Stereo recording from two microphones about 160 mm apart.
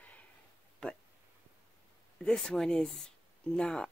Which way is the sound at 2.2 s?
5° left (ahead or behind).